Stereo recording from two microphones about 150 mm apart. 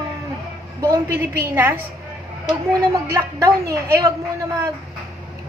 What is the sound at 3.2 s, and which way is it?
Speech, 20° right (ahead or behind).